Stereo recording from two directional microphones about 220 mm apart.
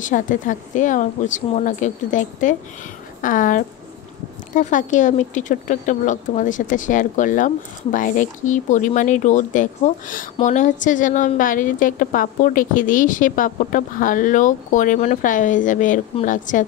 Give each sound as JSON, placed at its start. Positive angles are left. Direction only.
{"t": 0.0, "sound": "a woman's voice", "side_deg": 35}